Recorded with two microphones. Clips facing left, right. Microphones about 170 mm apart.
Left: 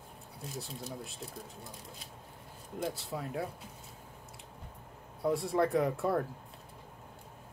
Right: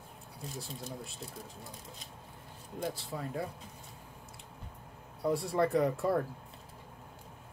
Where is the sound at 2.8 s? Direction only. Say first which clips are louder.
Left 1 dB; centre (ahead or behind).